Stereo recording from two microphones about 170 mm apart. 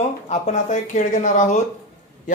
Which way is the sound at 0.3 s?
45° left (ahead or behind).